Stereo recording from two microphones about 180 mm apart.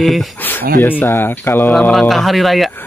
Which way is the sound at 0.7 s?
10° left (ahead or behind).